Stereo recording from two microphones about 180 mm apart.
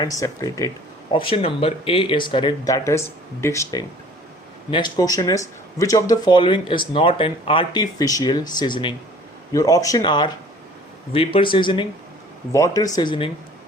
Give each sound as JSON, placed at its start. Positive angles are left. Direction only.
{"t": 0.0, "sound": "speech", "side_deg": 20}
{"t": 1.1, "sound": "speech", "side_deg": 30}